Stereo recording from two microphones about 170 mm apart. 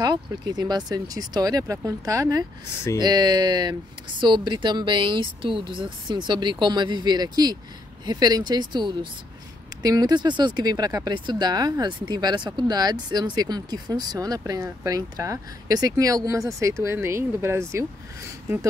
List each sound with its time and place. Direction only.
0.0 s speech: 25° right (ahead or behind)